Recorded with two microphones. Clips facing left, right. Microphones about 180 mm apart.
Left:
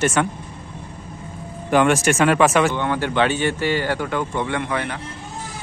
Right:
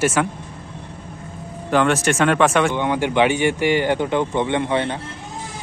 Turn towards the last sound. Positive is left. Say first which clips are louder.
# right 4 dB
turn(degrees=-25)  # may be behind; listen again after turning